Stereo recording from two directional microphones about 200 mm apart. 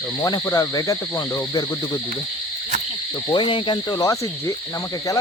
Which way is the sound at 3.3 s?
25° left (ahead or behind).